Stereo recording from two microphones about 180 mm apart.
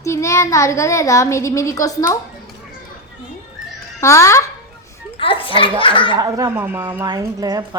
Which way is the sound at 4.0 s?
15° left (ahead or behind).